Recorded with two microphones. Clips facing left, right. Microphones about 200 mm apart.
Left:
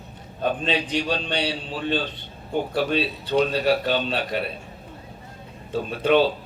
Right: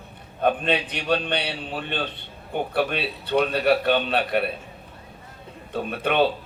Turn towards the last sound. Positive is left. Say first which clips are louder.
# left 2 dB
turn(degrees=-60)  # may be behind; listen again after turning